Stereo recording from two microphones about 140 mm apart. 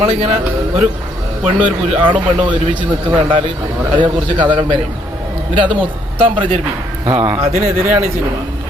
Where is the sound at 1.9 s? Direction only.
35° right (ahead or behind).